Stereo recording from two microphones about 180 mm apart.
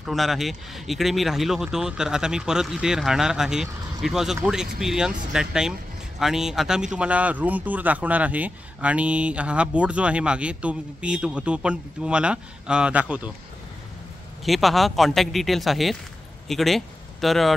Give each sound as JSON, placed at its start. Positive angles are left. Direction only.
{"t": 0.0, "sound": "speech", "side_deg": 0}
{"t": 14.4, "sound": "speech", "side_deg": 0}